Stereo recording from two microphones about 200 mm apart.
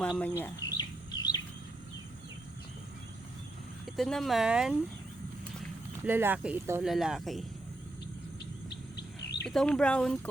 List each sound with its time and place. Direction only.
0.2 s bird: 10° left (ahead or behind)
3.9 s speech: centre (ahead or behind)
6.0 s speech: 10° right (ahead or behind)
9.0 s bird: 55° left (ahead or behind)
9.5 s speech: 5° left (ahead or behind)